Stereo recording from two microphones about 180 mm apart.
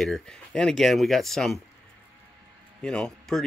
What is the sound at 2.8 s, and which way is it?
Speech, 5° left (ahead or behind).